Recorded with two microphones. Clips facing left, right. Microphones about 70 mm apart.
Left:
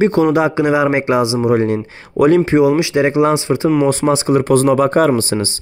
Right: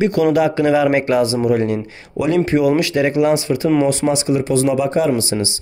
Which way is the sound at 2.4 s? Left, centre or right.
Left.